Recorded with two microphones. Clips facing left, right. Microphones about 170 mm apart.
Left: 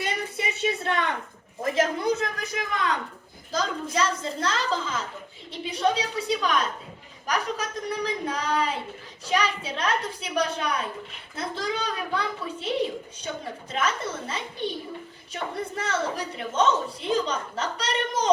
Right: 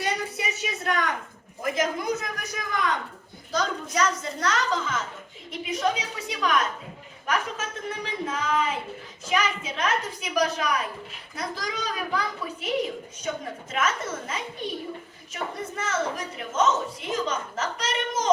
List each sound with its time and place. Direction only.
0.3 s a sound: 25° left (ahead or behind)
1.6 s a woman's voice: 30° left (ahead or behind)
3.9 s a woman's voice: 30° left (ahead or behind)